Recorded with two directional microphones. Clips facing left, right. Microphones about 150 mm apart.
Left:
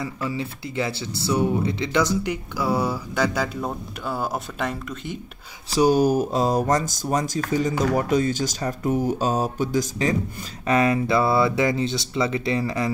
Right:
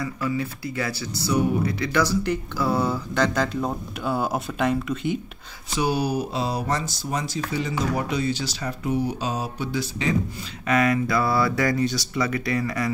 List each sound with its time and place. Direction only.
0.0 s speech: 25° left (ahead or behind); by 5.2 s centre (ahead or behind)
5.7 s speech: 40° left (ahead or behind)
10.7 s speech: 30° left (ahead or behind)